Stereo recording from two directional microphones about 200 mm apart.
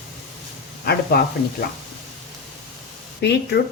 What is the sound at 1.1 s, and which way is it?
Speech, 55° left (ahead or behind).